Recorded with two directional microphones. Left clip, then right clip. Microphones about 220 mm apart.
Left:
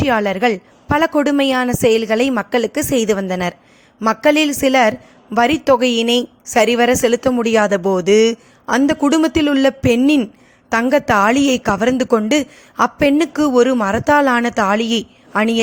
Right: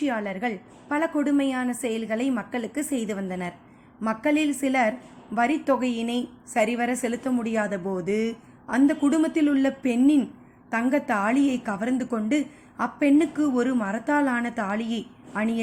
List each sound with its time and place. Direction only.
0.0 s a woman's voice: 50° left (ahead or behind)